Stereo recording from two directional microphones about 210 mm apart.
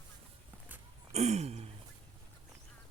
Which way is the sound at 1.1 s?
30° right (ahead or behind).